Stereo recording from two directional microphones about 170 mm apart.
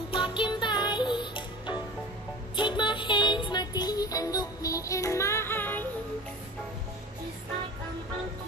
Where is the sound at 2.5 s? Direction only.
25° left (ahead or behind); by 5.9 s 10° left (ahead or behind).